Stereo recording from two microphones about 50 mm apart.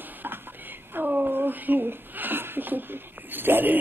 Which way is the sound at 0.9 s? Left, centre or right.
Right.